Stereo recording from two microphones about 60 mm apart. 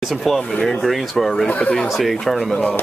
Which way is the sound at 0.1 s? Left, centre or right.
Centre.